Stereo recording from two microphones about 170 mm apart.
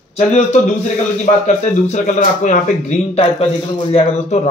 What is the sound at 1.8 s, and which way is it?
Speech, 45° left (ahead or behind).